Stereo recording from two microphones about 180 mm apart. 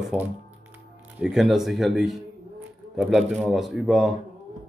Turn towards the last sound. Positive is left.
turn(degrees=0)  # may be behind; listen again after turning